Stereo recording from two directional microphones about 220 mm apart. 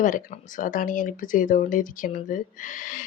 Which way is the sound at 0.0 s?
35° left (ahead or behind).